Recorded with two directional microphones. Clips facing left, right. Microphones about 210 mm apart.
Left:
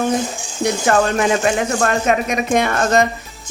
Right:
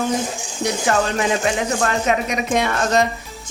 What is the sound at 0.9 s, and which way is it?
Speech, 50° left (ahead or behind).